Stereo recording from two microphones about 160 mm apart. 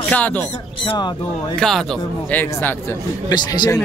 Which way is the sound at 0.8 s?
30° left (ahead or behind).